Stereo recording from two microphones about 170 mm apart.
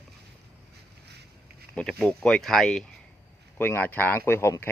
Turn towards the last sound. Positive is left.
turn(degrees=15)  # may be behind; listen again after turning